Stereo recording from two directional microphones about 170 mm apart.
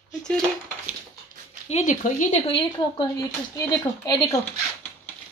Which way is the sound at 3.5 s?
20° left (ahead or behind).